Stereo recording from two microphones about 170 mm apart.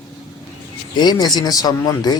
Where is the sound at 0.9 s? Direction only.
25° left (ahead or behind).